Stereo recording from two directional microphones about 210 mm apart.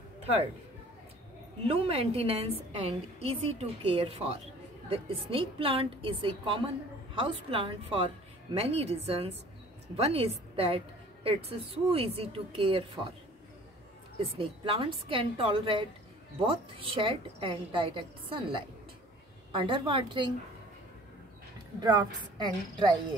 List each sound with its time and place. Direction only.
0.2 s a sound: 30° right (ahead or behind)
1.7 s a woman's voice: 30° right (ahead or behind)
14.4 s a woman's voice: 25° right (ahead or behind)
22.4 s a woman's voice: 20° right (ahead or behind)